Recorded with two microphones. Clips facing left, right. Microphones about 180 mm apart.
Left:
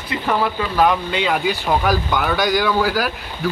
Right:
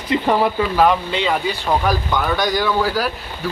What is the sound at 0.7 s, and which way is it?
Speech, centre (ahead or behind).